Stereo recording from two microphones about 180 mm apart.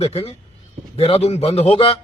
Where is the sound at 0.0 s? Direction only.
35° left (ahead or behind).